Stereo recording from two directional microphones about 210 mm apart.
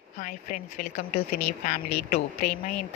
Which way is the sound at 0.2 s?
40° left (ahead or behind).